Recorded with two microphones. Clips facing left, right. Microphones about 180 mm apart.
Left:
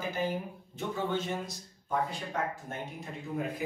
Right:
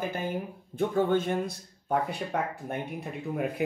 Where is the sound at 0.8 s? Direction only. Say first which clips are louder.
Right 8 dB; 50° right (ahead or behind).